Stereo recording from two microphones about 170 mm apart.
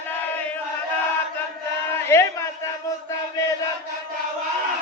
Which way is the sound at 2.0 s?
15° left (ahead or behind).